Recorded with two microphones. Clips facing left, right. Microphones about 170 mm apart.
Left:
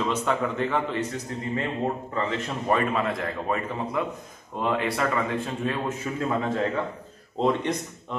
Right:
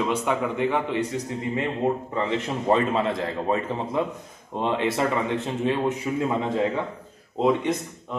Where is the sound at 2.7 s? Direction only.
25° right (ahead or behind).